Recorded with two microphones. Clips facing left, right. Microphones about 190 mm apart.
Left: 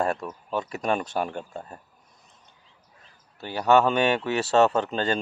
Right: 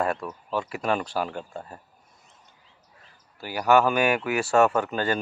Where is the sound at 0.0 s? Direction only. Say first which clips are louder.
Even; 25° left (ahead or behind).